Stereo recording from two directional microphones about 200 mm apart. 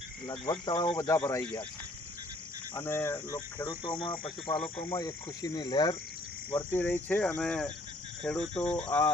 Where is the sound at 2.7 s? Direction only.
10° left (ahead or behind).